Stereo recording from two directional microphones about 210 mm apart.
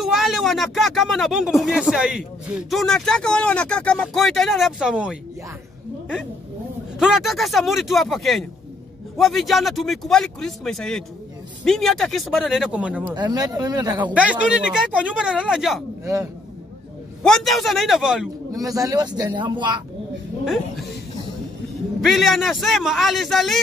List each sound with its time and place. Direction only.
0.0 s speech: centre (ahead or behind)
7.0 s speech: centre (ahead or behind)
13.1 s speech: 20° right (ahead or behind)
14.1 s speech: 5° right (ahead or behind)
17.2 s speech: centre (ahead or behind)
18.5 s speech: 15° right (ahead or behind)
20.4 s speech: centre (ahead or behind)
22.0 s speech: centre (ahead or behind)